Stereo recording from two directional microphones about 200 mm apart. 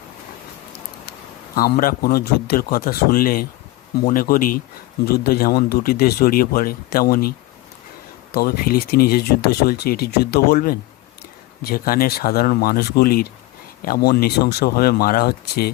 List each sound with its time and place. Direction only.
1.5 s speech: 45° left (ahead or behind)